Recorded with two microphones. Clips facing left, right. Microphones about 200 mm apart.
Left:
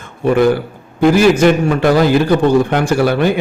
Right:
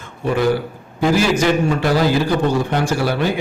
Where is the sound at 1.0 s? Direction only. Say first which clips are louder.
Left 6 dB; 60° left (ahead or behind).